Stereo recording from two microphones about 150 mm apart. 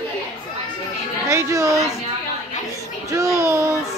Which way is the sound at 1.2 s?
20° right (ahead or behind).